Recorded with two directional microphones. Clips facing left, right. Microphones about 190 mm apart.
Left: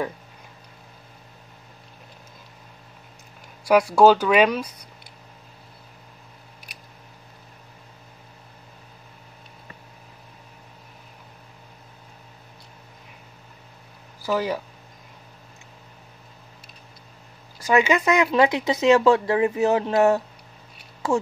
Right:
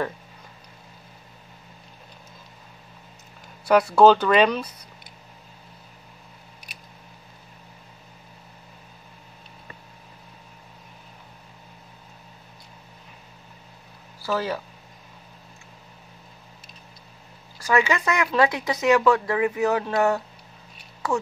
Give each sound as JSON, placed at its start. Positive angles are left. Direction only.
{"t": 3.6, "sound": "speech", "side_deg": 10}
{"t": 14.2, "sound": "speech", "side_deg": 15}
{"t": 17.6, "sound": "speech", "side_deg": 20}